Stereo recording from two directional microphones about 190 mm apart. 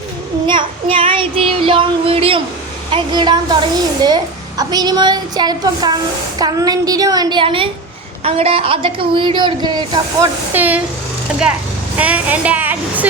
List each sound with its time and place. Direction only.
0.4 s child singing: 25° right (ahead or behind)
2.9 s a woman's voice: 25° right (ahead or behind)
10.5 s speech: 10° right (ahead or behind)
11.9 s speech: 5° right (ahead or behind)